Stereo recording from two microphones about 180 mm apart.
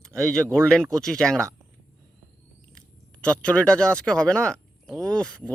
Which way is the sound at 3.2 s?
5° left (ahead or behind).